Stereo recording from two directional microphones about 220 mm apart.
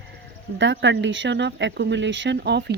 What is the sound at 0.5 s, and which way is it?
Speech, 55° right (ahead or behind).